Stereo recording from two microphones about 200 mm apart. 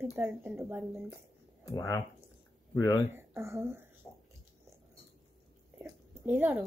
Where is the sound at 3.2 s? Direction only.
15° right (ahead or behind).